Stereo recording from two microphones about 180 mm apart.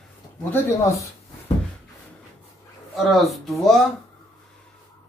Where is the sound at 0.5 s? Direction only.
15° left (ahead or behind).